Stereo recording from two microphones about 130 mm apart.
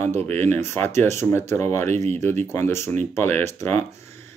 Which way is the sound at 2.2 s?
20° left (ahead or behind).